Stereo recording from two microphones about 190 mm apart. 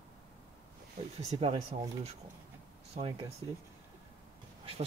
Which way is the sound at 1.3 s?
35° right (ahead or behind).